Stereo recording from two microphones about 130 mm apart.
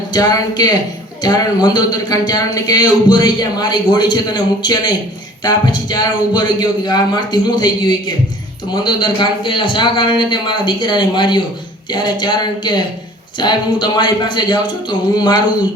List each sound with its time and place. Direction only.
0.1 s speech: 30° left (ahead or behind)